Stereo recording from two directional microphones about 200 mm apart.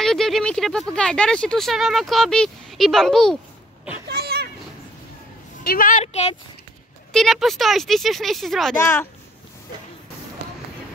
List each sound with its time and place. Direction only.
0.0 s speech: centre (ahead or behind)
4.1 s a sound: 50° right (ahead or behind)
5.6 s a woman's voice: 50° left (ahead or behind)
7.1 s speech: centre (ahead or behind)
8.7 s a child's voice: 10° left (ahead or behind)